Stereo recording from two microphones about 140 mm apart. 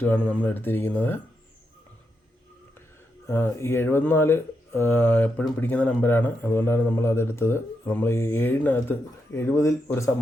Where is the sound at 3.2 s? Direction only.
15° left (ahead or behind).